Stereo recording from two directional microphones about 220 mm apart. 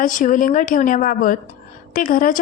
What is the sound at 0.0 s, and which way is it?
A woman's voice, 35° left (ahead or behind).